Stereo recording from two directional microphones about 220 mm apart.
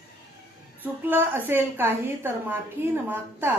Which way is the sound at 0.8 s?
10° right (ahead or behind).